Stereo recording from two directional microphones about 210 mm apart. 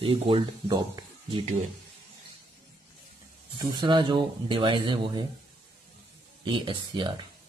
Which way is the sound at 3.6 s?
20° right (ahead or behind).